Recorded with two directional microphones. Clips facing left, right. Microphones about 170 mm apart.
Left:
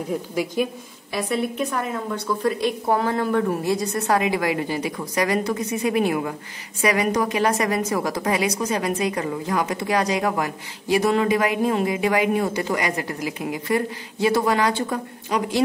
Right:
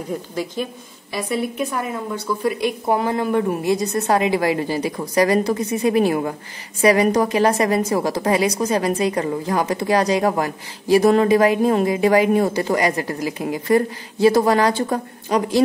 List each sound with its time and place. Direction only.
0.3 s a woman's voice: 10° left (ahead or behind)
1.1 s a woman's voice: 5° right (ahead or behind); by 15.6 s 40° right (ahead or behind)